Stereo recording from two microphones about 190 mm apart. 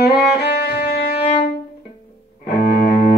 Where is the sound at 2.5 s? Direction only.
55° left (ahead or behind).